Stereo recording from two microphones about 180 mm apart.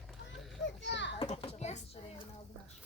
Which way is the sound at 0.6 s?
80° left.